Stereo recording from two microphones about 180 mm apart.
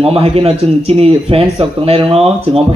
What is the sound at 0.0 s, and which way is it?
Speech, 35° right (ahead or behind).